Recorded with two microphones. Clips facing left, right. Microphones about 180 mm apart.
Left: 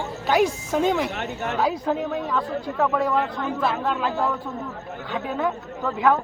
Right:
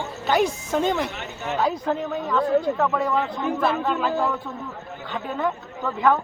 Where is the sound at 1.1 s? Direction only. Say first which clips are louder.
Left 3 dB; 55° left (ahead or behind).